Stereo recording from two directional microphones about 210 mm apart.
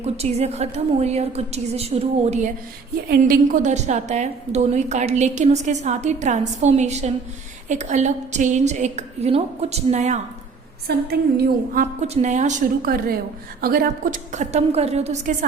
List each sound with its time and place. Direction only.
0.0 s a woman's voice: 30° right (ahead or behind)
11.7 s a woman's voice: 35° right (ahead or behind)